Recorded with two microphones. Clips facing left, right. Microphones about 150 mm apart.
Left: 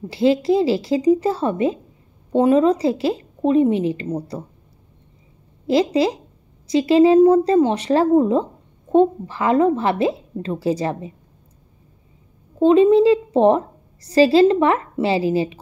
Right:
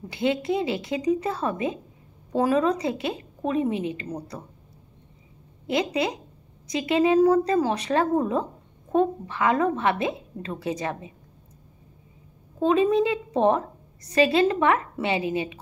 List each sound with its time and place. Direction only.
0.1 s a woman's voice: 30° left (ahead or behind)
5.7 s a woman's voice: 30° left (ahead or behind)
12.5 s a woman's voice: 30° left (ahead or behind)